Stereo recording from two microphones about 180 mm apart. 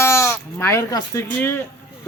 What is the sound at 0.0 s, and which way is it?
Speech, 15° left (ahead or behind).